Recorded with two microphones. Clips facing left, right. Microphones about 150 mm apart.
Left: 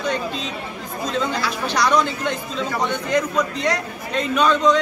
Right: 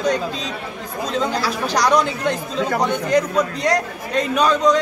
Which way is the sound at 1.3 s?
40° right (ahead or behind).